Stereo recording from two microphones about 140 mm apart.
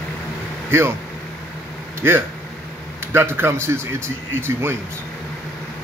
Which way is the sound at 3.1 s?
15° right (ahead or behind).